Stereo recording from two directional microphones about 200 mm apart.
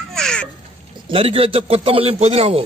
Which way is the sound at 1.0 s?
30° right (ahead or behind).